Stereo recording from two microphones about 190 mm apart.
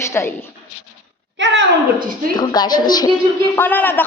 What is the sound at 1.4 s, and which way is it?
Speech, 70° right (ahead or behind).